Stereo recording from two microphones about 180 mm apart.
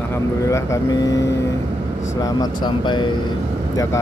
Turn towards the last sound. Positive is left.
turn(degrees=25)  # may be behind; listen again after turning